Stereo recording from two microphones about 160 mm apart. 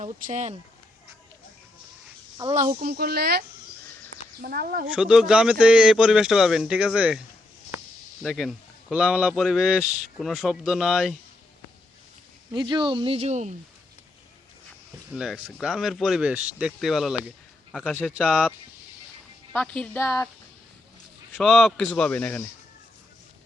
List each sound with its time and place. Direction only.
0.0 s speech: 50° right (ahead or behind)
2.6 s speech: 45° right (ahead or behind)
2.8 s speech: 75° right (ahead or behind)
4.9 s a man's voice: 5° right (ahead or behind)
8.2 s a man's voice: centre (ahead or behind)
12.5 s speech: 30° right (ahead or behind); by 13.6 s 45° right (ahead or behind)
15.1 s a man's voice: centre (ahead or behind)
19.5 s speech: 5° left (ahead or behind)
21.3 s a man's voice: centre (ahead or behind)